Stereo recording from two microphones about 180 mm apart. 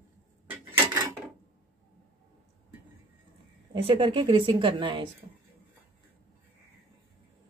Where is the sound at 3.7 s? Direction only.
30° right (ahead or behind).